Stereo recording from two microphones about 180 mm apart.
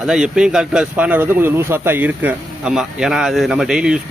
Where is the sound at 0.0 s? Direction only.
5° right (ahead or behind).